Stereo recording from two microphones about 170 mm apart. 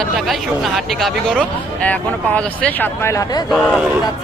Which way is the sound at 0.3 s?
Centre (ahead or behind).